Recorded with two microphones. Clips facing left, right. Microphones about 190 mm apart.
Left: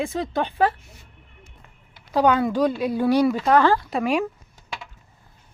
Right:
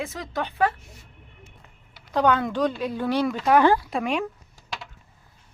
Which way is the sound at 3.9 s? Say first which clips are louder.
Left 3 dB; 5° left (ahead or behind).